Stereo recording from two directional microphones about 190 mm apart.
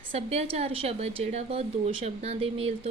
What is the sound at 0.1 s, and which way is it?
A woman's voice, 30° right (ahead or behind).